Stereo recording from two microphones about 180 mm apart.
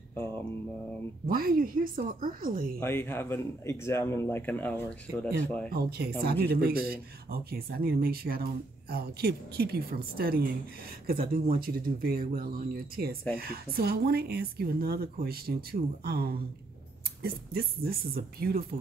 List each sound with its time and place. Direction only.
1.2 s speech: 55° right (ahead or behind)
2.8 s speech: 10° left (ahead or behind)
5.7 s speech: 60° right (ahead or behind)